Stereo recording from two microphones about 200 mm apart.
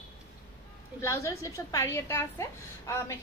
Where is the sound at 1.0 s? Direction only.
15° left (ahead or behind).